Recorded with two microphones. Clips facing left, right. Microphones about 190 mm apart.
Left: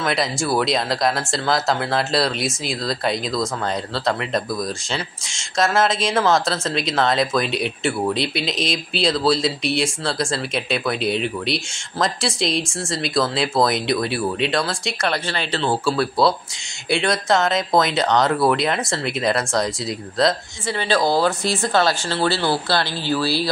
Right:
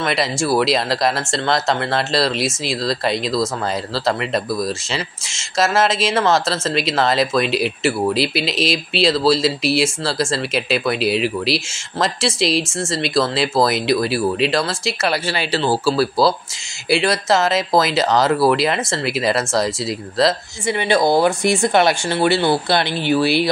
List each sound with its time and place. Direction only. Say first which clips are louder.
0.0 s speech: right 2 dB; centre (ahead or behind)
20.6 s speech: right 3 dB; 15° right (ahead or behind)